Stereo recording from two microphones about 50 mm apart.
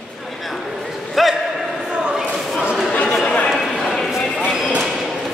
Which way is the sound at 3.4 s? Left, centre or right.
Centre.